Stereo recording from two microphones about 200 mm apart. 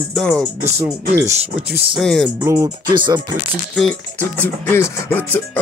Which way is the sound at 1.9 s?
Centre (ahead or behind).